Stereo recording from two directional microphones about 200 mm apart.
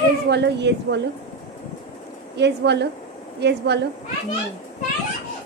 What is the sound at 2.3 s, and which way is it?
Speech, 60° right (ahead or behind).